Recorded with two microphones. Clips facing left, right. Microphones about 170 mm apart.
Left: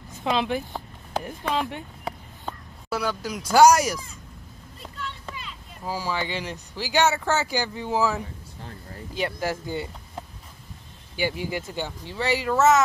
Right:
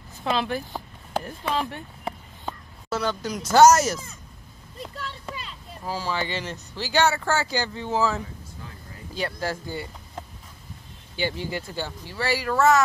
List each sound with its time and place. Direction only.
0.2 s speech: 15° left (ahead or behind)
4.7 s vehicle: 35° right (ahead or behind)
5.9 s speech: 15° left (ahead or behind)
11.1 s speech: 10° left (ahead or behind)